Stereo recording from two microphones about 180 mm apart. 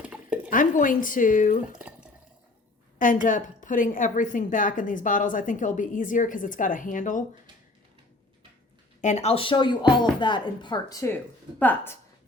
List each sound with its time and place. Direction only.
0.0 s a sound: 5° right (ahead or behind)
0.5 s a woman's voice: 45° left (ahead or behind)
3.0 s a woman's voice: 45° left (ahead or behind)
9.0 s a woman's voice: 40° left (ahead or behind); by 11.9 s 10° left (ahead or behind)